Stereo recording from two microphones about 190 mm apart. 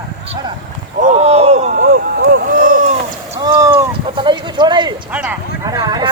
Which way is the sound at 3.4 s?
20° right (ahead or behind).